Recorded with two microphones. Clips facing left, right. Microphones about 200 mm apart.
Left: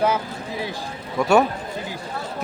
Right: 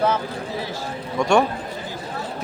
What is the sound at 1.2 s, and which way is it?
Speech, 5° left (ahead or behind).